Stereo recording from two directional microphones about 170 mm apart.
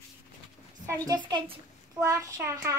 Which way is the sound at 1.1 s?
25° right (ahead or behind).